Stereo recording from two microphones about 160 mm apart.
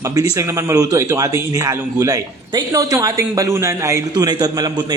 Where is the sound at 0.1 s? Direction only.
20° right (ahead or behind).